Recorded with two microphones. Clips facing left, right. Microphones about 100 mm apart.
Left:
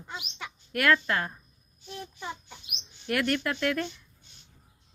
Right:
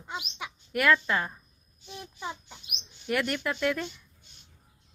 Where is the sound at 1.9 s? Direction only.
15° right (ahead or behind).